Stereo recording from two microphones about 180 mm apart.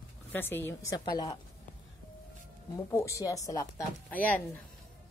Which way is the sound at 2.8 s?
15° left (ahead or behind).